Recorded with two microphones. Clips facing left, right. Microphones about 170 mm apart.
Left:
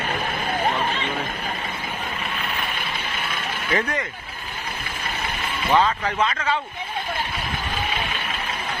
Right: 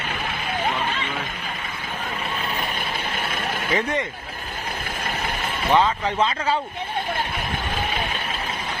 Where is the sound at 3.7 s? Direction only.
20° right (ahead or behind).